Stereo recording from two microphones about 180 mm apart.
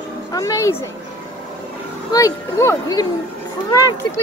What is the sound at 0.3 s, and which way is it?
Speech, 15° left (ahead or behind).